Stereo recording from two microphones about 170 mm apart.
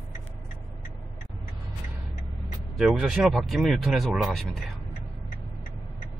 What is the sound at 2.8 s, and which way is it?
Speech, 5° right (ahead or behind).